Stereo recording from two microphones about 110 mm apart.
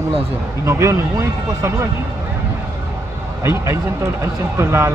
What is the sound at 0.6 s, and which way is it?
Speech, 25° right (ahead or behind).